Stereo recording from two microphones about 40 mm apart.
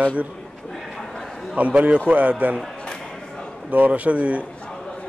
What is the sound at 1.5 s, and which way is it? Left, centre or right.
A man's voice, right.